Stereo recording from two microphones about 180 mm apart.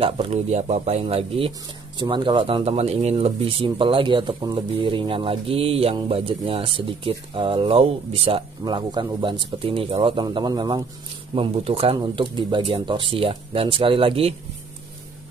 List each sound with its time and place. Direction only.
0.0 s speech: 35° right (ahead or behind)